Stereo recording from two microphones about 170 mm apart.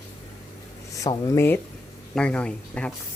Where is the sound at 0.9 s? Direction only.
20° left (ahead or behind).